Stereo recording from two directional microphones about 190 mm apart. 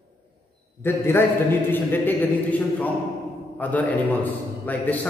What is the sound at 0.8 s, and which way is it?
A man's voice, 10° left (ahead or behind).